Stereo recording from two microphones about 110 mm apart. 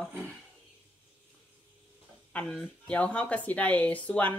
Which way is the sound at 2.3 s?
10° left (ahead or behind).